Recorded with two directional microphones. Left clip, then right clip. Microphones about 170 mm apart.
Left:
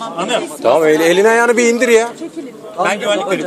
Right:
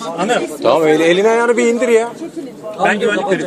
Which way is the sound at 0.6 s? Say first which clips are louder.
Left 1 dB; 25° left (ahead or behind).